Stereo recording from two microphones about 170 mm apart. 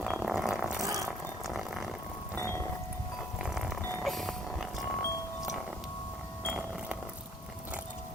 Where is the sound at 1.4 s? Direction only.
Centre (ahead or behind).